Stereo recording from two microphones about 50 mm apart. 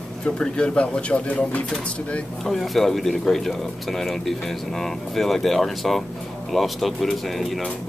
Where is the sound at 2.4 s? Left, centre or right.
Centre.